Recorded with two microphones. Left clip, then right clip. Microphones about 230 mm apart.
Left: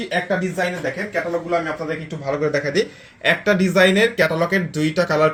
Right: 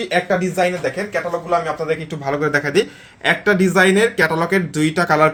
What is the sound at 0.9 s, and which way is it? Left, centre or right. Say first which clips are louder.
Speech: right 1 dB; right.